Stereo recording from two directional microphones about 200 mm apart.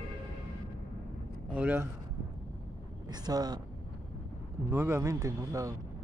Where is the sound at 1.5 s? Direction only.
10° right (ahead or behind).